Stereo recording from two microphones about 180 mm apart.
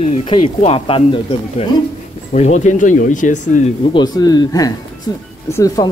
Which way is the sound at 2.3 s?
40° left (ahead or behind).